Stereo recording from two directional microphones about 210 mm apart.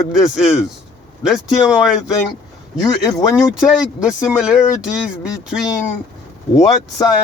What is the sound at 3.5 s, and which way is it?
A man's voice, 5° right (ahead or behind).